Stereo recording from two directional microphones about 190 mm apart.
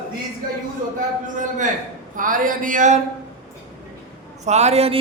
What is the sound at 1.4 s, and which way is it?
Speech, 40° right (ahead or behind).